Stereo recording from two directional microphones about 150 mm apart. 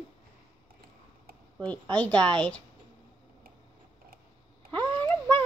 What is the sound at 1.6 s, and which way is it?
Speech, 10° left (ahead or behind).